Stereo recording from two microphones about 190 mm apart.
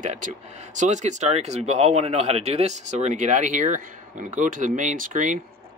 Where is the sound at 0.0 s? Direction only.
40° right (ahead or behind).